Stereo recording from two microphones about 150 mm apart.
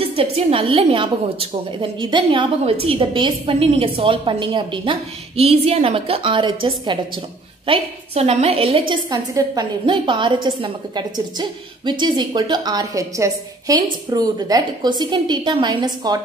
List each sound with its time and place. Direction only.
0.0 s a woman's voice: 40° right (ahead or behind)